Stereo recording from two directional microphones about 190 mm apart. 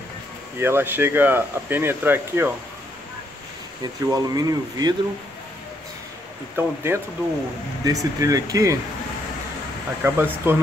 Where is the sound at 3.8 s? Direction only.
20° right (ahead or behind).